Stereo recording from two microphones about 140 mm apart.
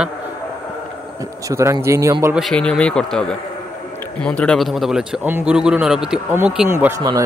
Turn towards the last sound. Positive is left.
turn(degrees=-20)  # may be behind; listen again after turning